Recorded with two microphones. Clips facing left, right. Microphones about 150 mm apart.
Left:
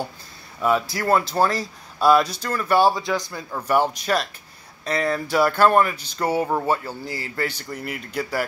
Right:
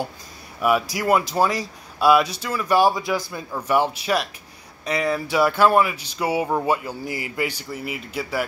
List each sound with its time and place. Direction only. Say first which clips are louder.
0.6 s a man's voice: right 1 dB; 10° right (ahead or behind)